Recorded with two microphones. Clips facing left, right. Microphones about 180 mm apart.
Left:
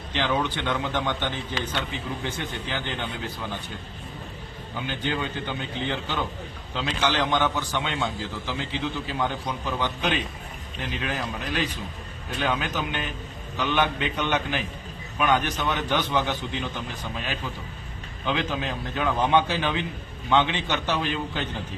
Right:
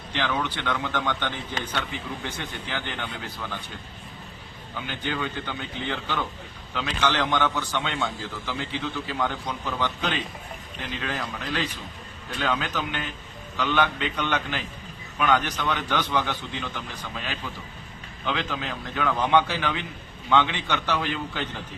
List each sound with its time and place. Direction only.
0.1 s a man's voice: 20° left (ahead or behind)
4.9 s a man's voice: 20° left (ahead or behind)